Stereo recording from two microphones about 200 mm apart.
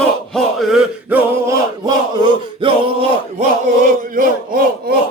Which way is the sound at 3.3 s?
40° right (ahead or behind).